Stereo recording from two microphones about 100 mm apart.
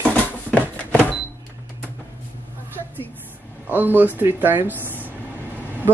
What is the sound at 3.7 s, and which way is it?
Speech, 20° right (ahead or behind).